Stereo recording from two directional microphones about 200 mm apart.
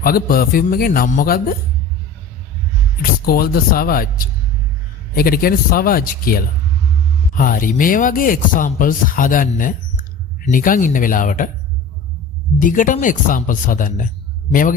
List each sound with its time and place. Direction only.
0.0 s speech: 45° left (ahead or behind)
3.0 s speech: 50° left (ahead or behind)
12.5 s speech: 40° left (ahead or behind)